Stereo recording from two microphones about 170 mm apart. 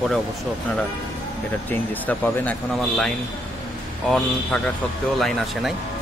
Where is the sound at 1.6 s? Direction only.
10° left (ahead or behind).